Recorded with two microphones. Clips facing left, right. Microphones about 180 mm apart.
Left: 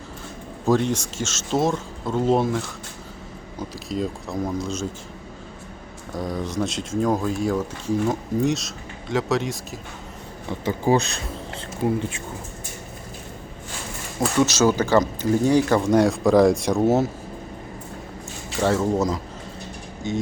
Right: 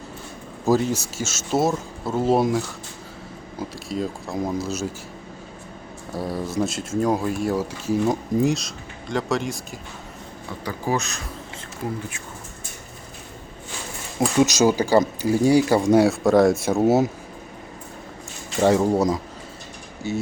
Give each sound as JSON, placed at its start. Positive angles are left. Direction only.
{"t": 0.6, "sound": "speech", "side_deg": -5}
{"t": 3.6, "sound": "speech", "side_deg": 0}
{"t": 6.1, "sound": "speech", "side_deg": -5}
{"t": 10.7, "sound": "speech", "side_deg": 25}
{"t": 14.4, "sound": "speech", "side_deg": -15}
{"t": 16.8, "sound": "speech", "side_deg": -15}
{"t": 18.6, "sound": "speech", "side_deg": -15}
{"t": 20.0, "sound": "speech", "side_deg": -5}